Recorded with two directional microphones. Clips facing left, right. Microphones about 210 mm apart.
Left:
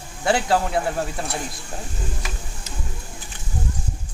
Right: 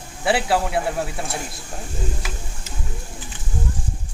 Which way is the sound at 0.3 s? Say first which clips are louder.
Even; 5° right (ahead or behind).